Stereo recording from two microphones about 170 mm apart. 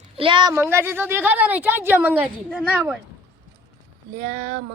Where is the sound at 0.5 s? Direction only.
15° right (ahead or behind).